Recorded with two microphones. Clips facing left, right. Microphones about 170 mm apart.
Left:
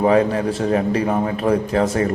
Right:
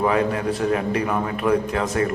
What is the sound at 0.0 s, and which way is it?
A man's voice, 30° left (ahead or behind).